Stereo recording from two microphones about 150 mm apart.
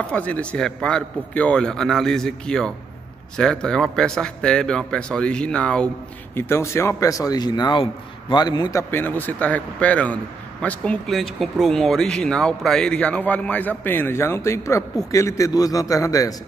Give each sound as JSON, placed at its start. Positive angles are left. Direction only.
{"t": 0.0, "sound": "a man's voice", "side_deg": 10}
{"t": 6.3, "sound": "speech", "side_deg": 20}
{"t": 8.9, "sound": "speech", "side_deg": 10}